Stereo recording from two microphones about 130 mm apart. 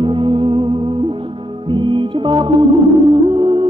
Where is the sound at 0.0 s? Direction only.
40° right (ahead or behind).